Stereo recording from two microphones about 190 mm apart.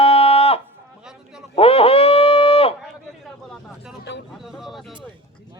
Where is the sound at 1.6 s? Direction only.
30° left (ahead or behind).